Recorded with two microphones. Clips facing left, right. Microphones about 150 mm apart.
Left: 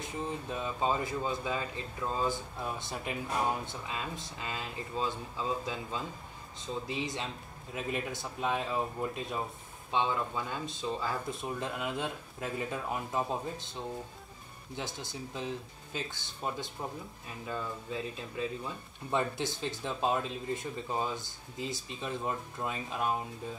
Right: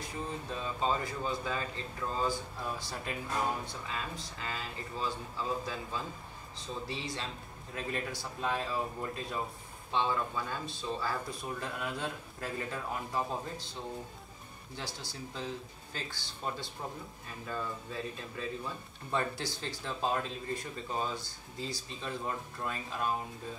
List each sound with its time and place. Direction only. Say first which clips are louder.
0.0 s speech: left 2 dB; 20° left (ahead or behind)